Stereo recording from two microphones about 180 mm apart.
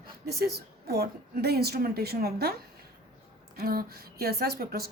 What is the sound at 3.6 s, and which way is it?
Speech, 60° right (ahead or behind).